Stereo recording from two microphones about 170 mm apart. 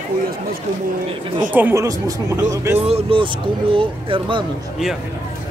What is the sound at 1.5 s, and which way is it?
A man's voice, 10° right (ahead or behind).